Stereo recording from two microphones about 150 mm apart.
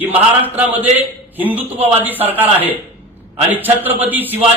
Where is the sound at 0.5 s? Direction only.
10° right (ahead or behind).